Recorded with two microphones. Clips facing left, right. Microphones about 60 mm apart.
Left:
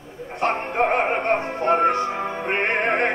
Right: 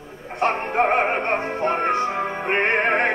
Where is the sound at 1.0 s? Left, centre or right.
Centre.